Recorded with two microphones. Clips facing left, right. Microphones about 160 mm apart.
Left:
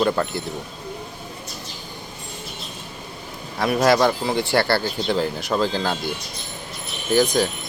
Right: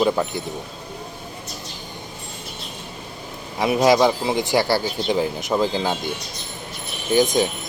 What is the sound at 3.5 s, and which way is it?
Speech, 15° right (ahead or behind).